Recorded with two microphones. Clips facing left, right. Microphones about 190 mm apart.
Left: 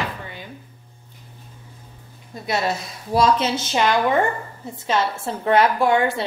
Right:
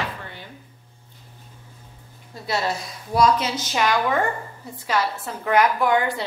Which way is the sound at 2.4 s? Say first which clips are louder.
Left 2 dB; 20° left (ahead or behind).